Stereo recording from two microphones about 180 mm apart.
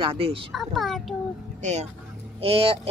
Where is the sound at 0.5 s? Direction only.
Centre (ahead or behind).